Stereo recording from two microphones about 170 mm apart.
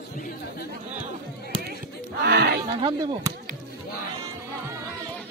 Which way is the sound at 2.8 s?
30° right (ahead or behind).